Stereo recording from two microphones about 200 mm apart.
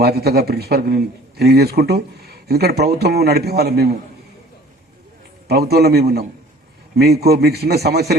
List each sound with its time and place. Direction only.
0.0 s speech: 50° right (ahead or behind)
5.5 s speech: 55° right (ahead or behind)